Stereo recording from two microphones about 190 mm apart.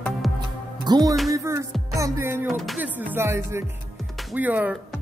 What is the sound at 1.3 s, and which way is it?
Music, 15° right (ahead or behind).